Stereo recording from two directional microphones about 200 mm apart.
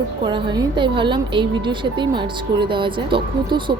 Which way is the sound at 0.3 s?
25° right (ahead or behind).